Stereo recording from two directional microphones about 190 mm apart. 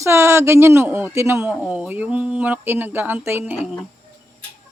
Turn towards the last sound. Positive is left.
turn(degrees=-5)  # may be behind; listen again after turning